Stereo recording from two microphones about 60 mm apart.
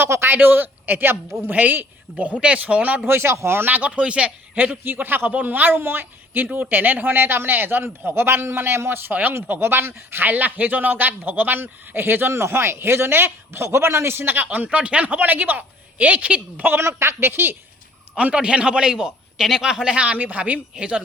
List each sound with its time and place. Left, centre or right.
0.0 s speech: right
3.1 s speech: right
3.7 s speech: right
4.5 s speech: right
14.4 s speech: right
16.7 s speech: right
18.2 s a man's voice: right
19.8 s a man's voice: centre